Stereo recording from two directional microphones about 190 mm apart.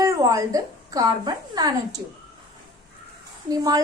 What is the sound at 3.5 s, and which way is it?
Speech, 20° right (ahead or behind).